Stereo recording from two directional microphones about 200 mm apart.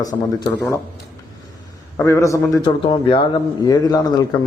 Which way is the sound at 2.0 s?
15° left (ahead or behind).